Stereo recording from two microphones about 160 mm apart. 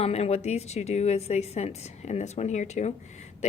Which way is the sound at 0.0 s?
40° left (ahead or behind).